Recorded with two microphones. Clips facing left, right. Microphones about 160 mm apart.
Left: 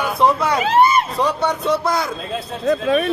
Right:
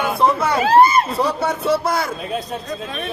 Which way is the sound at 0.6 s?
40° right (ahead or behind).